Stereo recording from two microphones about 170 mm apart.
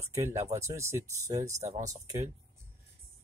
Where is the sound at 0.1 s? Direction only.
15° right (ahead or behind).